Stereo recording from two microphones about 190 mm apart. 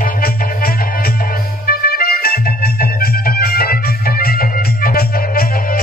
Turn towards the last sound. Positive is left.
turn(degrees=50)  # may be behind; listen again after turning